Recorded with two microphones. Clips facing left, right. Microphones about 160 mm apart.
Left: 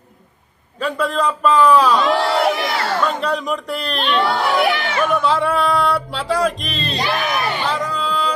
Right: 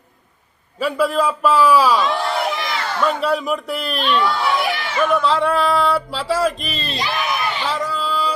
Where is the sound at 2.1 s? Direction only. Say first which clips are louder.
Left 4 dB; 85° left.